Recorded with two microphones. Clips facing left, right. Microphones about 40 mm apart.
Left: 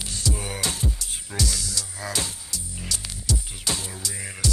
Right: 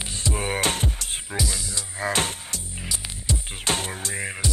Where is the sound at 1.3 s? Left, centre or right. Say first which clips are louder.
Left 1 dB; centre; by 2.6 s right.